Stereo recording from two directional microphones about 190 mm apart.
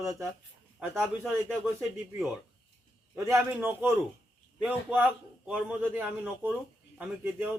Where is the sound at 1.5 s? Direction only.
Centre (ahead or behind).